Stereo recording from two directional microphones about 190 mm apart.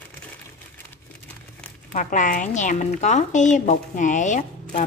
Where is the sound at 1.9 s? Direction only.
40° left (ahead or behind).